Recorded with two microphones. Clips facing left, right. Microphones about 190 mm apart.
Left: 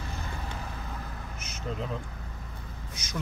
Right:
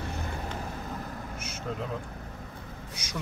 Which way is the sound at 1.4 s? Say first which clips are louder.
Right 4 dB; 10° right (ahead or behind).